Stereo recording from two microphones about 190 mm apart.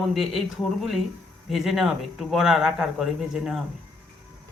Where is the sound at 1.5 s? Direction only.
Centre (ahead or behind).